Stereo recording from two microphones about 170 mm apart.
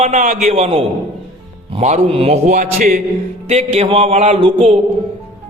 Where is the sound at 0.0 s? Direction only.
45° right (ahead or behind).